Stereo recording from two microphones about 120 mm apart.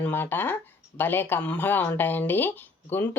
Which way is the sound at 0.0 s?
15° left (ahead or behind).